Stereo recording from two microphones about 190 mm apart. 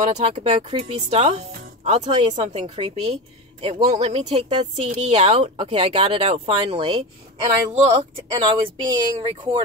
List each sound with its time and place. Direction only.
0.2 s speech: 30° right (ahead or behind)